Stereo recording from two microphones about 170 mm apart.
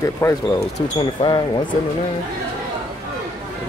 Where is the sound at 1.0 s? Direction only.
25° left (ahead or behind).